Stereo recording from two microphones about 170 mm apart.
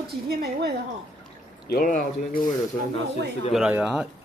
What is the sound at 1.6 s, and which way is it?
Speech, 55° left (ahead or behind).